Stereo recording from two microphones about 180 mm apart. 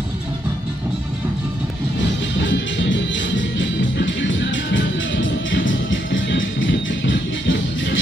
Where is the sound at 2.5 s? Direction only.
90° left.